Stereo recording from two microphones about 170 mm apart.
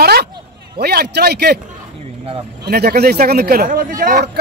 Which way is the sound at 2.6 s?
65° right (ahead or behind).